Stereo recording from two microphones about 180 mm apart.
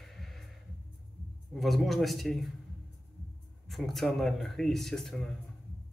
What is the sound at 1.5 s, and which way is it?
Speech, centre (ahead or behind).